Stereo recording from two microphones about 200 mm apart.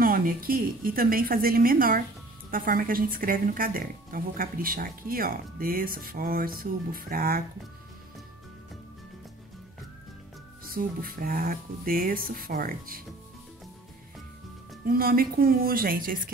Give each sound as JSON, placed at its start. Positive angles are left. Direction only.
{"t": 0.0, "sound": "speech", "side_deg": -45}
{"t": 10.6, "sound": "speech", "side_deg": -45}
{"t": 14.9, "sound": "speech", "side_deg": -50}